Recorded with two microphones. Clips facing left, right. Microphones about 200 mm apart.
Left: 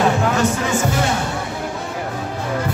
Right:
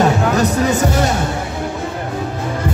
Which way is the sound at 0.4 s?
40° right (ahead or behind).